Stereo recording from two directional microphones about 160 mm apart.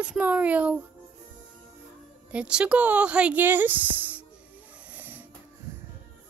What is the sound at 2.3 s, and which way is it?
Speech, 5° right (ahead or behind).